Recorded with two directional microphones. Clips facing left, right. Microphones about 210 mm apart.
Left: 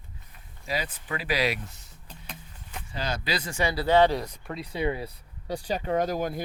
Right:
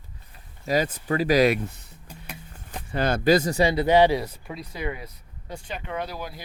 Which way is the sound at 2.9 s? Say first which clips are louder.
Right 11 dB; 55° right (ahead or behind).